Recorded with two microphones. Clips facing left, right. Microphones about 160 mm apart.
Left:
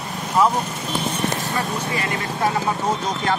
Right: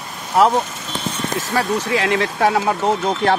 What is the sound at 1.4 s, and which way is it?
Speech, 90° right.